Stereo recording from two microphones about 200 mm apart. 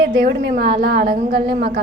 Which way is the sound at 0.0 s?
55° right (ahead or behind).